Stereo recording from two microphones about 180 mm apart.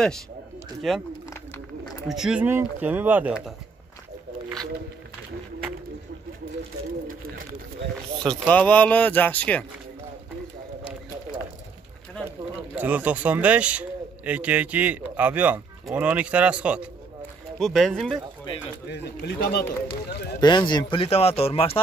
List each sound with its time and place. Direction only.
0.8 s speech: centre (ahead or behind)
1.3 s bird: 15° left (ahead or behind)
2.0 s speech: centre (ahead or behind)
8.2 s speech: 5° left (ahead or behind)
12.3 s speech: 10° right (ahead or behind)
18.9 s a man's voice: 65° left (ahead or behind)
20.3 s speech: 25° left (ahead or behind)